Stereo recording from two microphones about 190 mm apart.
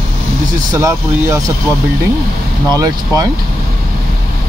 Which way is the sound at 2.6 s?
20° right (ahead or behind).